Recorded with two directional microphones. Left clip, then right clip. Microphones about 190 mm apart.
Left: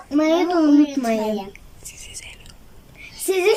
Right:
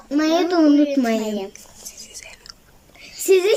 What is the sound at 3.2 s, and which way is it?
Speech, 10° left (ahead or behind).